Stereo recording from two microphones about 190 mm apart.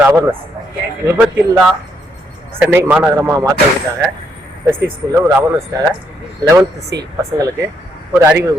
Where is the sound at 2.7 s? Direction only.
10° right (ahead or behind).